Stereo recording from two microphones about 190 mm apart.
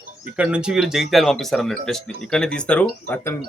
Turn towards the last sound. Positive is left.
turn(degrees=10)  # may be behind; listen again after turning